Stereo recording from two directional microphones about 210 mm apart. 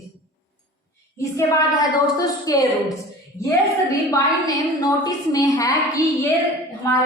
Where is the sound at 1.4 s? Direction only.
15° left (ahead or behind).